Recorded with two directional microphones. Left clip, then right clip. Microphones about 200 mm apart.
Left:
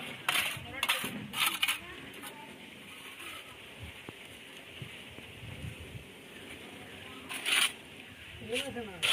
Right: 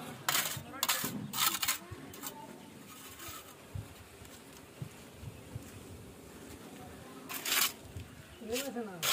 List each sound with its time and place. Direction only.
0.3 s coin: 10° right (ahead or behind)
7.3 s a sound: 20° right (ahead or behind)
8.5 s snake: 15° right (ahead or behind)